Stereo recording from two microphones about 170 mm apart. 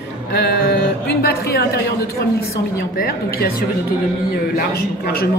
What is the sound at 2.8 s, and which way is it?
Speech, 60° left (ahead or behind).